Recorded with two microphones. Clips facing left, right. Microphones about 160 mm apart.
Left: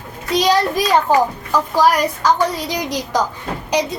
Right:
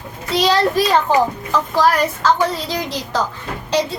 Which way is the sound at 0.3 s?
15° left (ahead or behind).